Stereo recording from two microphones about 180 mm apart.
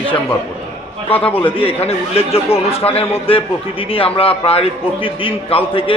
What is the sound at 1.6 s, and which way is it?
A man's voice, 35° left (ahead or behind).